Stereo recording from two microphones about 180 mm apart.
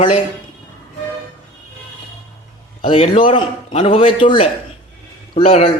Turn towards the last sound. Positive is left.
turn(degrees=35)  # may be behind; listen again after turning